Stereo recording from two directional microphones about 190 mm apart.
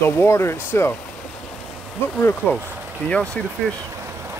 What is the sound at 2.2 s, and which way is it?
Speech, 10° left (ahead or behind).